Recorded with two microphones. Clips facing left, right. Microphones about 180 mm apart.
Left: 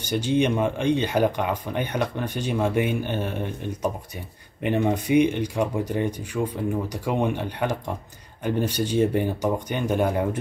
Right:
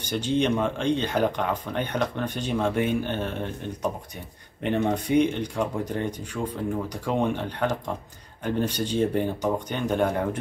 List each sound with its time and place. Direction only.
0.1 s speech: 10° left (ahead or behind)
4.6 s speech: 10° left (ahead or behind)